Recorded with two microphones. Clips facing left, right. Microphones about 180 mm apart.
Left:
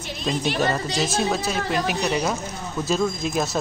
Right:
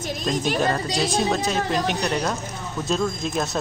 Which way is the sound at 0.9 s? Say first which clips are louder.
Right 1 dB; centre (ahead or behind).